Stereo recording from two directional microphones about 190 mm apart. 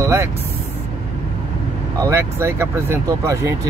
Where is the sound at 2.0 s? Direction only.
15° right (ahead or behind).